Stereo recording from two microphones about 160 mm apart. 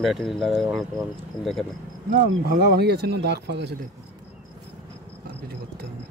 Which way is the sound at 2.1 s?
60° right (ahead or behind).